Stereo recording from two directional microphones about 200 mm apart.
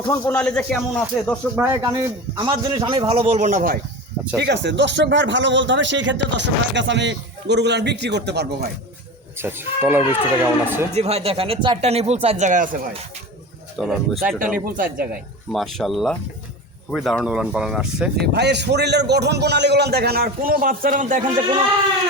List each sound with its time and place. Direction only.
0.0 s speech: 15° left (ahead or behind)
1.5 s a man's voice: 15° right (ahead or behind); by 3.8 s 40° right (ahead or behind)
4.4 s speech: 60° right (ahead or behind)
9.4 s speech: 10° right (ahead or behind)
10.9 s speech: 30° right (ahead or behind)
13.7 s speech: centre (ahead or behind)
14.2 s speech: 45° right (ahead or behind)
15.5 s speech: centre (ahead or behind)
18.2 s speech: 55° right (ahead or behind); by 21.2 s 40° right (ahead or behind)